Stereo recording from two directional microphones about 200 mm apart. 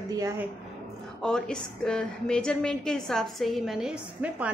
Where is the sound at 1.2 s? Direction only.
5° left (ahead or behind).